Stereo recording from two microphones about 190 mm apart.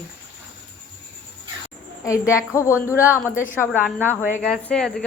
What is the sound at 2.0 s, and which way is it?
Speech, 15° left (ahead or behind).